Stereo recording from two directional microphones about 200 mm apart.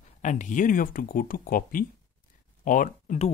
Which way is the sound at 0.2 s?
40° left (ahead or behind).